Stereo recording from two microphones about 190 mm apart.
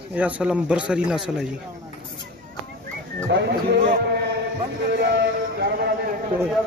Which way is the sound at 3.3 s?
60° right (ahead or behind).